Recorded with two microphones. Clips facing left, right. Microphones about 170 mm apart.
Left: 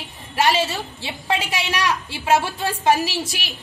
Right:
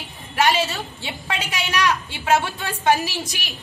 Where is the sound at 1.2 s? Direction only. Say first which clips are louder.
Left 5 dB; 30° left (ahead or behind).